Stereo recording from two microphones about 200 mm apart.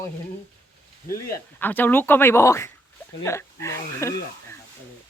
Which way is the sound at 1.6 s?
10° left (ahead or behind).